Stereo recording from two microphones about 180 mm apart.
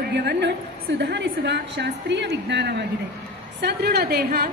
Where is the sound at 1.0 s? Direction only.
70° right (ahead or behind).